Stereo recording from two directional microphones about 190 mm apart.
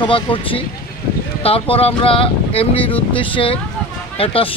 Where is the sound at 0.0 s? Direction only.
25° left (ahead or behind).